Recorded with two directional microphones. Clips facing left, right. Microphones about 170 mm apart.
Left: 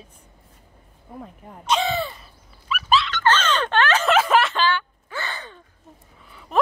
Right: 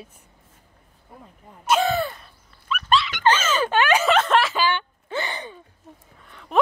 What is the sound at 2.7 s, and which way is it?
Dog, 5° left (ahead or behind).